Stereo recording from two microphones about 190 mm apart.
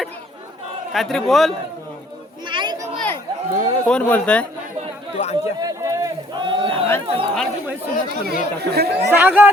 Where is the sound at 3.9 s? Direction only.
10° left (ahead or behind).